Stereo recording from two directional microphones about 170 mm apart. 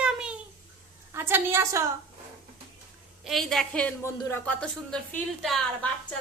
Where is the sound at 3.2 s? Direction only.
Centre (ahead or behind).